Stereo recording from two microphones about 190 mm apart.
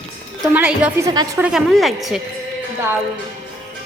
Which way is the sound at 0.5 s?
10° right (ahead or behind).